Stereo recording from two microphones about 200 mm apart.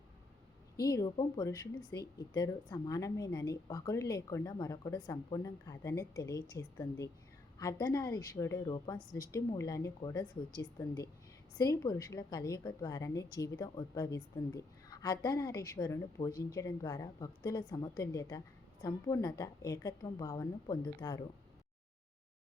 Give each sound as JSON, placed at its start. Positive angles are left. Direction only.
{"t": 0.8, "sound": "a woman's voice", "side_deg": 15}